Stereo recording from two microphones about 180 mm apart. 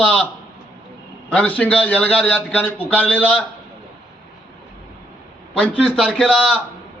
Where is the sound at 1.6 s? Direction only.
10° left (ahead or behind).